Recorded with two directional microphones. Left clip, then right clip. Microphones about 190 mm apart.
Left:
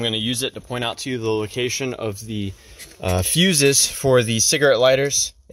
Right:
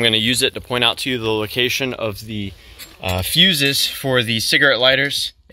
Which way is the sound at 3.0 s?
40° left (ahead or behind).